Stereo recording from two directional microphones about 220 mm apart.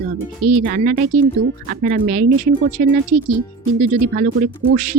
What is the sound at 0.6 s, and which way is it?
Speech, 40° right (ahead or behind).